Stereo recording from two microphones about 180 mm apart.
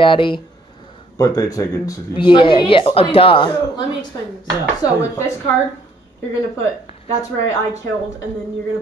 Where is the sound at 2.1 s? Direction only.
30° left (ahead or behind).